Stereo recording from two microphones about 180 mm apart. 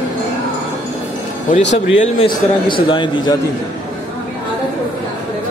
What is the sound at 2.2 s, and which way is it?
A man's voice, 30° left (ahead or behind).